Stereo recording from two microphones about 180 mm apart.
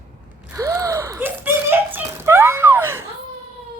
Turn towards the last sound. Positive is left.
turn(degrees=-15)  # may be behind; listen again after turning